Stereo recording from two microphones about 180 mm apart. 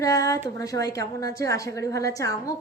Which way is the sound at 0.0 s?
20° left (ahead or behind).